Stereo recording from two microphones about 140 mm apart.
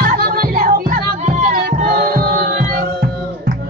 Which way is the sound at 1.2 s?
60° right (ahead or behind).